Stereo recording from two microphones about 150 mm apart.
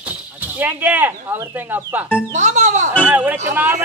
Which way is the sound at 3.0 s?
10° right (ahead or behind).